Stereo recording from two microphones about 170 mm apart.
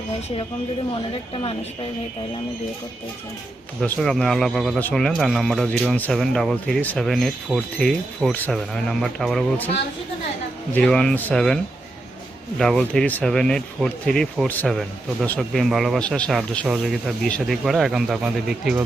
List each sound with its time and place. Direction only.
1.3 s speech: 30° left (ahead or behind)
3.8 s speech: 5° left (ahead or behind)
10.8 s speech: 5° left (ahead or behind)